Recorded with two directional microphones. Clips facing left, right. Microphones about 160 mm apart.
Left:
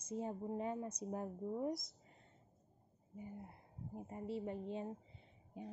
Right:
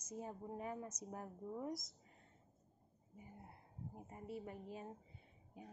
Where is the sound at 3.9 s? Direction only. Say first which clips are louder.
Left 7 dB; 25° left (ahead or behind).